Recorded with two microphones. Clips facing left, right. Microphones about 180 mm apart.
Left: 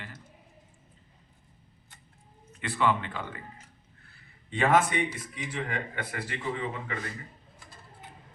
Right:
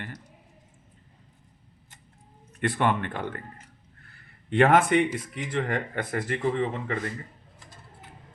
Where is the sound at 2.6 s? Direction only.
55° right (ahead or behind).